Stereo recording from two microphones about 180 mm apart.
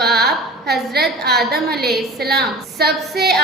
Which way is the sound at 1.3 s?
65° right (ahead or behind).